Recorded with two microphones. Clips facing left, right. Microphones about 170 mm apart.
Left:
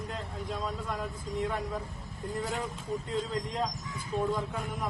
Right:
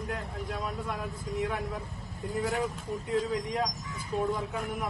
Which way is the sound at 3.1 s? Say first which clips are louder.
Right 6 dB; centre (ahead or behind).